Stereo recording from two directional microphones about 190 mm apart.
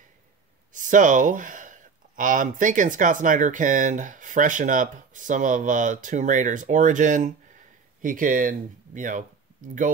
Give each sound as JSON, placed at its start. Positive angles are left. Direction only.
{"t": 0.7, "sound": "speech", "side_deg": -40}